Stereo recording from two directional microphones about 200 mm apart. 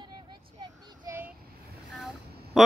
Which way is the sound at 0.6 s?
15° right (ahead or behind).